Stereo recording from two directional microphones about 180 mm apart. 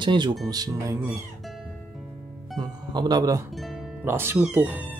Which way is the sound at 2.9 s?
25° right (ahead or behind).